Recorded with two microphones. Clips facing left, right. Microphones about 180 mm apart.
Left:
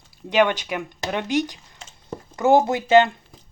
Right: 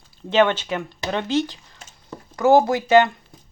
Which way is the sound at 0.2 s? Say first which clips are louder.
Right 1 dB; 15° left (ahead or behind).